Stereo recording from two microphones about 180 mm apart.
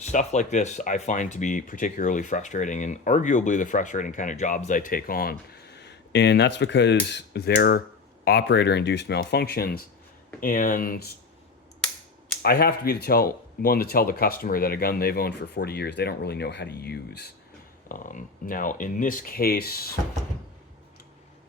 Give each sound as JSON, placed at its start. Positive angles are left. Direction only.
{"t": 0.0, "sound": "speech", "side_deg": 40}
{"t": 12.4, "sound": "speech", "side_deg": 60}
{"t": 17.8, "sound": "speech", "side_deg": 45}